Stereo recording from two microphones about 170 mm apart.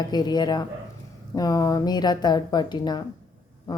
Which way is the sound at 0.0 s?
25° left (ahead or behind).